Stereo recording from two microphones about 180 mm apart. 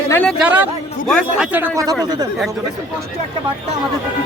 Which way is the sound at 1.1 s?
5° left (ahead or behind).